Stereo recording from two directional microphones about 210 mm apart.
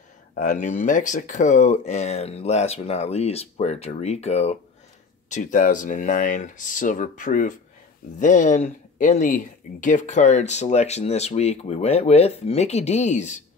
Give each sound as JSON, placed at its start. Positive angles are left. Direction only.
{"t": 0.4, "sound": "speech", "side_deg": 35}